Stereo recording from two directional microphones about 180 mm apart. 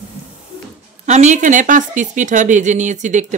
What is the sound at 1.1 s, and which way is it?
Speech, 40° right (ahead or behind).